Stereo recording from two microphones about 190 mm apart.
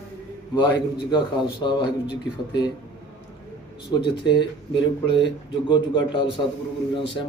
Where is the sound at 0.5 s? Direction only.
25° left (ahead or behind).